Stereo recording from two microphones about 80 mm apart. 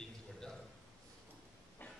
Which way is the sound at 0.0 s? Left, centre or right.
Centre.